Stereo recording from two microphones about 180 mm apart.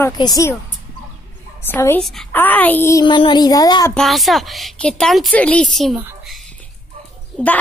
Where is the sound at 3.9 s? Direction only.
Centre (ahead or behind).